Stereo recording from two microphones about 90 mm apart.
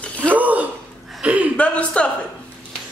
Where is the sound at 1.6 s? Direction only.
15° left (ahead or behind).